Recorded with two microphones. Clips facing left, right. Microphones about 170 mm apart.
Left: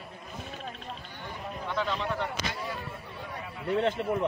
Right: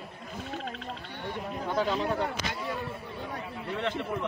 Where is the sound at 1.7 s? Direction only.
40° right (ahead or behind).